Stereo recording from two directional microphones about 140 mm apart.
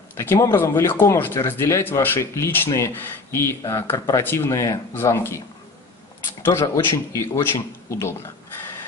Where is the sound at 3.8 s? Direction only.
30° left (ahead or behind).